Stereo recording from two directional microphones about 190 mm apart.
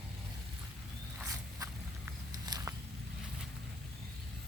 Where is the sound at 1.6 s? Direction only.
20° right (ahead or behind).